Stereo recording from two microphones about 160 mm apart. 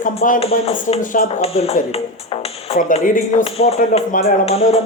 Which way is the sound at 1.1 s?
55° left (ahead or behind).